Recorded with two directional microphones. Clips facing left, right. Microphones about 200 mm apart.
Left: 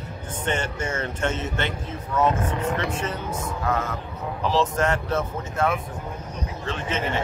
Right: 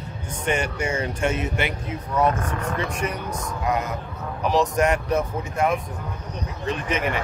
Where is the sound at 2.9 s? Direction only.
15° right (ahead or behind).